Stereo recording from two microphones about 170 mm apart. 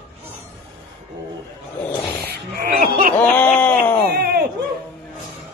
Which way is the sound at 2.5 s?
60° right (ahead or behind).